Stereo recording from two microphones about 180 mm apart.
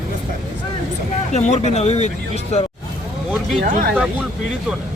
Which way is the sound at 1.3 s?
40° left (ahead or behind).